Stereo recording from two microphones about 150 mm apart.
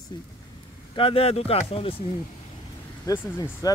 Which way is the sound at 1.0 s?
40° left (ahead or behind).